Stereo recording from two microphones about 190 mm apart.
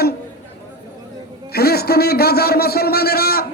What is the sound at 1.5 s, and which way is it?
A man's voice, 55° left (ahead or behind).